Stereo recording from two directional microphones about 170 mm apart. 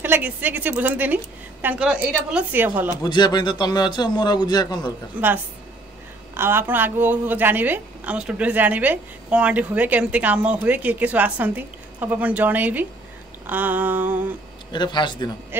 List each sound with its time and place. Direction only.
0.0 s a woman's voice: 10° right (ahead or behind)
3.0 s a man's voice: 25° left (ahead or behind)
5.2 s a woman's voice: 10° right (ahead or behind)
6.3 s a woman's voice: 15° right (ahead or behind)
14.7 s a man's voice: 25° left (ahead or behind)